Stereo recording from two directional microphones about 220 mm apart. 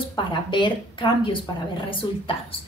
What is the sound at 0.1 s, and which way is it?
A woman's voice, 20° left (ahead or behind).